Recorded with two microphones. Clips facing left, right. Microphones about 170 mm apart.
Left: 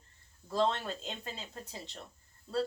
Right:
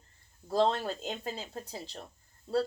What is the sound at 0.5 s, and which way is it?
Speech, 35° right (ahead or behind).